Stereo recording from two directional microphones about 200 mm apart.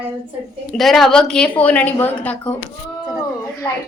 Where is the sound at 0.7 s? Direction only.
Centre (ahead or behind).